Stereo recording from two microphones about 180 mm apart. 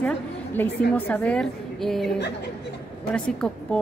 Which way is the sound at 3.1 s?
5° left (ahead or behind).